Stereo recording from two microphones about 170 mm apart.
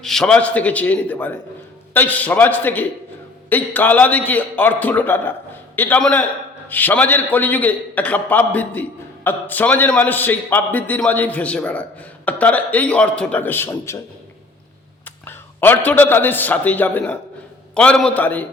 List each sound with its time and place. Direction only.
0.0 s a man's voice: 5° left (ahead or behind)
15.0 s a man's voice: 10° left (ahead or behind)